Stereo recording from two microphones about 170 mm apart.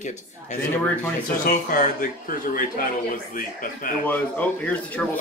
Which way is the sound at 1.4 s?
55° left (ahead or behind).